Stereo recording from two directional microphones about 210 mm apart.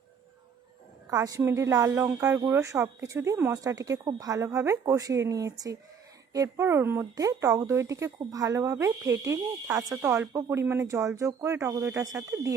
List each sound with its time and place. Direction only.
1.1 s speech: 15° right (ahead or behind)